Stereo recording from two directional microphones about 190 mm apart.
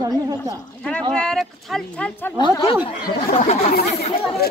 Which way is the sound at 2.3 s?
20° left (ahead or behind).